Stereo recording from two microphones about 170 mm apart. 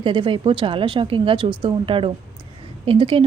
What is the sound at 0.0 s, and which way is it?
A woman's voice, 30° right (ahead or behind).